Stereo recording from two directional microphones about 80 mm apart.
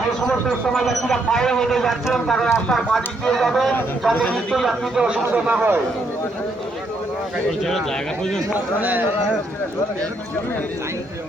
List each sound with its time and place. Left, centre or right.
0.3 s speech: centre
5.0 s a man's voice: centre
7.6 s speech: centre
8.5 s a man's voice: right